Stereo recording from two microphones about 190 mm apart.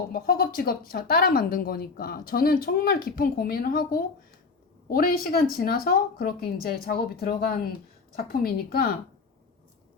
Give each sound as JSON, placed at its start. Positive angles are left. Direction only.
{"t": 0.1, "sound": "speech", "side_deg": 50}